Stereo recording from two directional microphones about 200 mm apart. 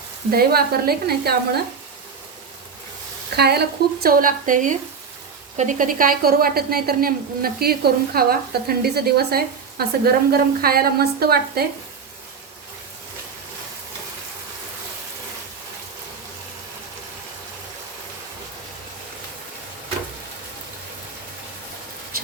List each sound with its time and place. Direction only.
0.3 s a woman's voice: 50° right (ahead or behind)
3.3 s a woman's voice: 55° right (ahead or behind)